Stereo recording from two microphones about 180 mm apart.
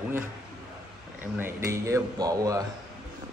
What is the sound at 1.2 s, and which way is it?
Speech, 15° right (ahead or behind).